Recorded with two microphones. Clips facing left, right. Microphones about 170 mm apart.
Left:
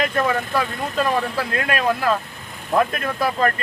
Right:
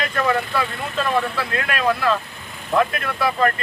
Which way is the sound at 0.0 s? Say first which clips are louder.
Left 1 dB; 40° left (ahead or behind).